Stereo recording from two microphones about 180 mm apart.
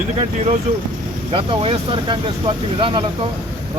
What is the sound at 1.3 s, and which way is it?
Speech, 30° right (ahead or behind).